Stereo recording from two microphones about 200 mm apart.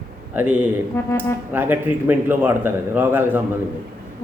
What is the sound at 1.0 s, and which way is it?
Speech, 10° left (ahead or behind).